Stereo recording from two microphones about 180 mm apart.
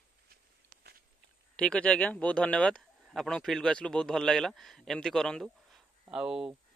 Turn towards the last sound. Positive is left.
turn(degrees=-5)  # may be behind; listen again after turning